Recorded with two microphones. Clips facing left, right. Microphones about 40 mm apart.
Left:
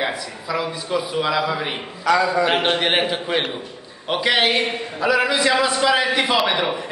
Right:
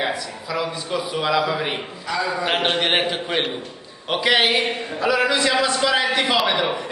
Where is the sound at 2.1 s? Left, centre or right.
Left.